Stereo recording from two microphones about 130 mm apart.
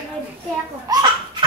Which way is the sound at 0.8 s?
30° right (ahead or behind).